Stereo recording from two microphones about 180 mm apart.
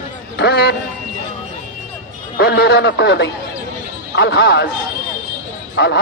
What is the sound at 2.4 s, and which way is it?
Speech, 65° left (ahead or behind).